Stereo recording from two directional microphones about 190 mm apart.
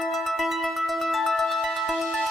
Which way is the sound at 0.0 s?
Centre (ahead or behind).